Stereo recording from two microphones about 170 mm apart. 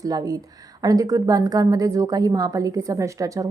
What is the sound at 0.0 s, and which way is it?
A woman's voice, 20° right (ahead or behind).